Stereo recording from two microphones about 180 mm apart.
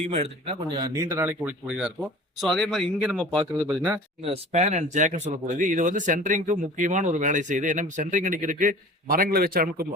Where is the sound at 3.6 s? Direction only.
5° right (ahead or behind).